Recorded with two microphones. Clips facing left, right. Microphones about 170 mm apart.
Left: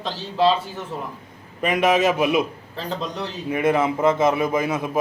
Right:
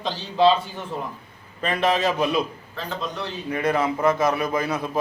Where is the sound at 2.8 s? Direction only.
35° left (ahead or behind).